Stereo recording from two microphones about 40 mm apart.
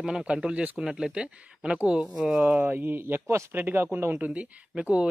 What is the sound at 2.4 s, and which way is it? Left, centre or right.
Speech, right.